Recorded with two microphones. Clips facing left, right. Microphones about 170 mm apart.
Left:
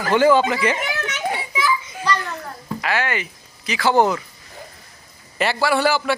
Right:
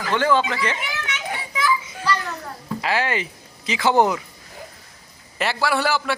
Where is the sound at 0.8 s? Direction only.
40° left (ahead or behind).